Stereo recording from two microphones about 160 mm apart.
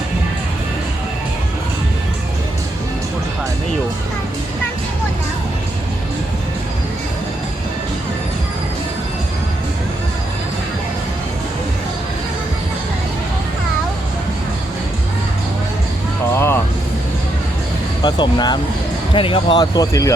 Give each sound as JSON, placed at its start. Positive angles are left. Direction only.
{"t": 16.3, "sound": "vehicle", "side_deg": 15}
{"t": 18.0, "sound": "music", "side_deg": 25}
{"t": 19.1, "sound": "speech", "side_deg": 35}